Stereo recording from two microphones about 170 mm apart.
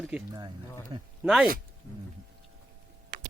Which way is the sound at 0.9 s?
30° right (ahead or behind).